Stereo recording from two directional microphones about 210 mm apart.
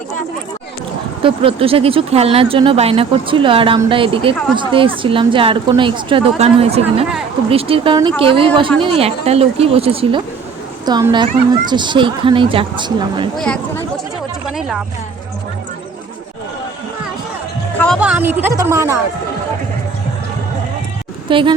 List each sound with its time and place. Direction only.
1.2 s speech: 25° right (ahead or behind)
13.3 s speech: 5° left (ahead or behind)
17.7 s speech: centre (ahead or behind); by 18.9 s 15° right (ahead or behind)
21.2 s speech: 25° right (ahead or behind)